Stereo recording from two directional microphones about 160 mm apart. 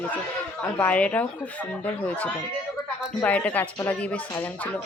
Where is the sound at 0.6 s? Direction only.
10° left (ahead or behind).